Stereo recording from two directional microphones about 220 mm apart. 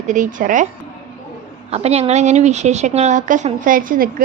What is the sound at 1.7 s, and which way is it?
A woman's voice, 30° right (ahead or behind).